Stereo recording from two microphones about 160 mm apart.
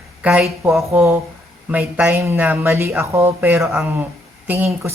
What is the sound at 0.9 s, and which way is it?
Speech, 10° right (ahead or behind).